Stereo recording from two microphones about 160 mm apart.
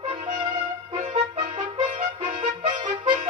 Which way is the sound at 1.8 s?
50° right (ahead or behind).